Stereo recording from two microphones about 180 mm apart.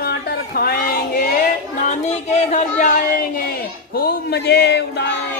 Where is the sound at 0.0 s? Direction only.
60° left (ahead or behind).